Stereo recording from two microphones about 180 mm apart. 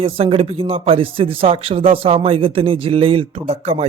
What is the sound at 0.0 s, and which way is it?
Speech, 30° right (ahead or behind).